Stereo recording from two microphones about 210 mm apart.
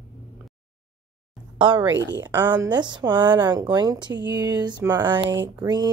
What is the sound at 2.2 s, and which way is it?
Speech, 10° right (ahead or behind).